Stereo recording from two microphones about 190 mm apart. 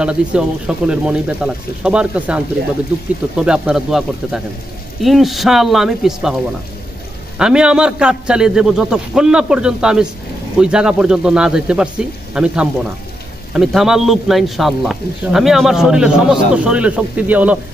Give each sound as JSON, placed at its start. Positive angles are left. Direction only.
{"t": 0.0, "sound": "a man's voice", "side_deg": -5}